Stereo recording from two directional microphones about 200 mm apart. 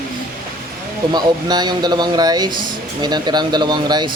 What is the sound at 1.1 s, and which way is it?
Speech, 20° right (ahead or behind).